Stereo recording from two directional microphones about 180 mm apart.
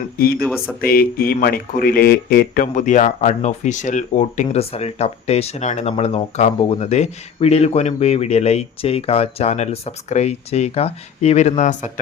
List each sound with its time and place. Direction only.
0.2 s speech: 55° left (ahead or behind); by 11.8 s 40° left (ahead or behind)